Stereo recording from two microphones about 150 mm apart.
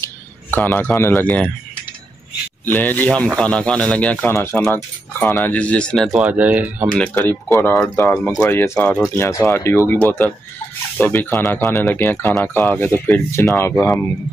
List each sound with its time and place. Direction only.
0.0 s speech: 15° left (ahead or behind)
2.6 s speech: 10° left (ahead or behind); by 6.9 s 10° right (ahead or behind)
7.0 s speech: 5° left (ahead or behind)
7.5 s speech: 15° left (ahead or behind)
11.0 s speech: 10° left (ahead or behind)